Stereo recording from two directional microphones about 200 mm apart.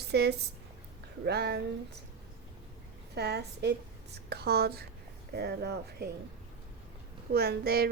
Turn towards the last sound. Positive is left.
turn(degrees=-50)  # may be behind; listen again after turning